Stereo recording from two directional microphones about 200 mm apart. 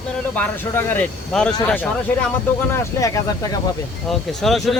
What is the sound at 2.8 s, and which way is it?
Speech, 15° left (ahead or behind).